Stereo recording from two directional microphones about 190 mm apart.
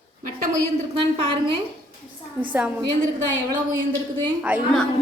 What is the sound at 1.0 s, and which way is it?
Speech, 30° right (ahead or behind).